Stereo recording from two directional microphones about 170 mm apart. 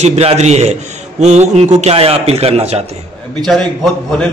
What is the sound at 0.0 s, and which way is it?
A man's voice, 40° right (ahead or behind).